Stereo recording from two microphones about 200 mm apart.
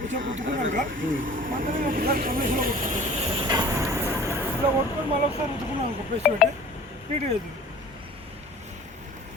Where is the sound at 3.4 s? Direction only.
20° right (ahead or behind).